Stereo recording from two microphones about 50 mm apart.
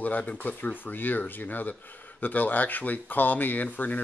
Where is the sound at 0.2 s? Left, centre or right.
Left.